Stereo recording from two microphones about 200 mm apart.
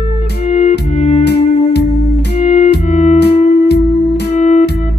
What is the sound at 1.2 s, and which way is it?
Music, 55° left (ahead or behind).